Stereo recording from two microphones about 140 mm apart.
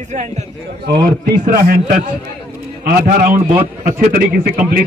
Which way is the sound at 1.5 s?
80° right.